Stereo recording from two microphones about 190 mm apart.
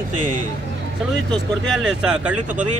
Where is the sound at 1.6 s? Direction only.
Centre (ahead or behind).